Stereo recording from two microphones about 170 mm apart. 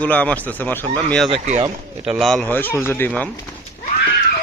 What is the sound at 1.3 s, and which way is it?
Speech, 40° right (ahead or behind).